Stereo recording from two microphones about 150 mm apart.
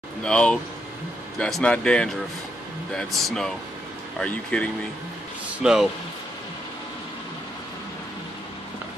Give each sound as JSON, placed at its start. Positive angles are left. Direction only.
{"t": 0.2, "sound": "speech", "side_deg": 5}
{"t": 5.6, "sound": "speech", "side_deg": -5}